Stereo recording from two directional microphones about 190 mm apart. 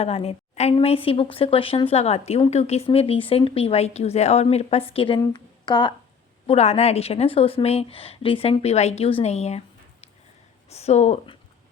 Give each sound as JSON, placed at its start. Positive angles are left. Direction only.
{"t": 0.0, "sound": "speech", "side_deg": 30}
{"t": 6.5, "sound": "speech", "side_deg": 35}